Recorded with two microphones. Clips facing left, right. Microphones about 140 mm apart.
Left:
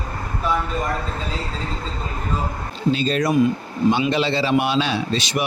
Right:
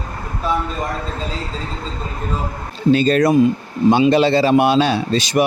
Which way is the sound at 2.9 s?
50° right (ahead or behind).